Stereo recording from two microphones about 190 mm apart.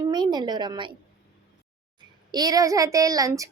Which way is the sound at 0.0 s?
20° right (ahead or behind).